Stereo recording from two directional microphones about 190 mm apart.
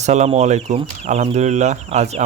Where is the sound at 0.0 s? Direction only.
35° right (ahead or behind).